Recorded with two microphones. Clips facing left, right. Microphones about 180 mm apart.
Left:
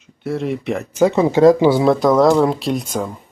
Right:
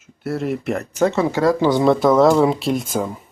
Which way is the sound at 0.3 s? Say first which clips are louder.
Left 1 dB; centre (ahead or behind).